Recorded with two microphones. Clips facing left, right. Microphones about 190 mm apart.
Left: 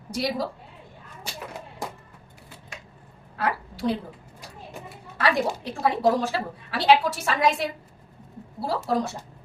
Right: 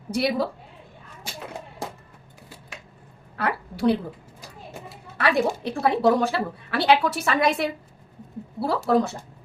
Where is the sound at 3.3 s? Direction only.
60° right (ahead or behind).